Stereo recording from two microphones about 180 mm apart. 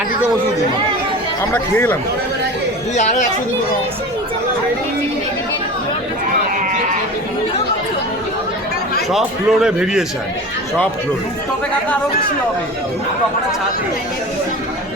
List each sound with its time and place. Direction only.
1.5 s speech: 10° left (ahead or behind)
2.9 s speech: 40° left (ahead or behind)
9.0 s a man's voice: centre (ahead or behind)